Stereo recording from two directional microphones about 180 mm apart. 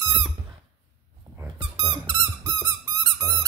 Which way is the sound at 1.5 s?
25° right (ahead or behind).